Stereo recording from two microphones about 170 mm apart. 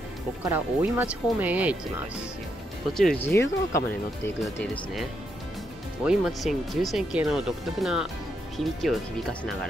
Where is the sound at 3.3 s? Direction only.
15° left (ahead or behind).